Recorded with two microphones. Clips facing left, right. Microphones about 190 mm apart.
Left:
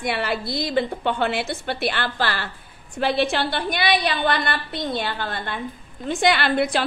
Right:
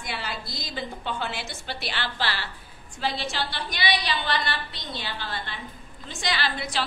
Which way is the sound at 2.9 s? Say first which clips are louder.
Left 8 dB; 60° left (ahead or behind).